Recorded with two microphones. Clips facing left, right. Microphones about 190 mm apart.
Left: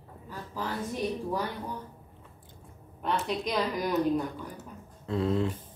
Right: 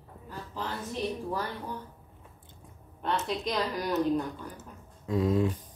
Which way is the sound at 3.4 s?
10° left (ahead or behind).